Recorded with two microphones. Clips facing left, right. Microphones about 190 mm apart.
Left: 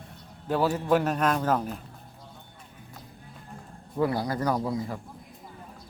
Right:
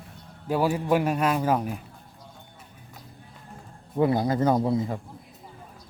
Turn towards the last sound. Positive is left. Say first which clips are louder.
# right 5 dB
turn(degrees=-25)  # may be behind; listen again after turning